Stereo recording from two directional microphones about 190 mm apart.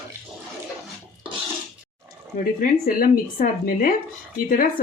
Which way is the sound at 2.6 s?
50° left (ahead or behind).